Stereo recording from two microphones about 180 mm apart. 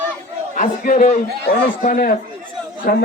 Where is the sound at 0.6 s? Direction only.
40° left (ahead or behind).